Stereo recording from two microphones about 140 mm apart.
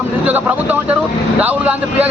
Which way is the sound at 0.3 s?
10° right (ahead or behind).